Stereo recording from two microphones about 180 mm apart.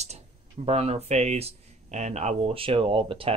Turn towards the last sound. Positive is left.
turn(degrees=-30)  # may be behind; listen again after turning